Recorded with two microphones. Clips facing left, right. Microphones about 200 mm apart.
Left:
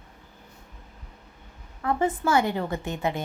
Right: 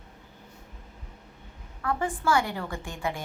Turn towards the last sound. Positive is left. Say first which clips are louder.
# left 5 dB
turn(degrees=20)  # may be behind; listen again after turning